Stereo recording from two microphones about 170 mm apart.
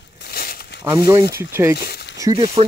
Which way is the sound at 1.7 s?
70° left (ahead or behind).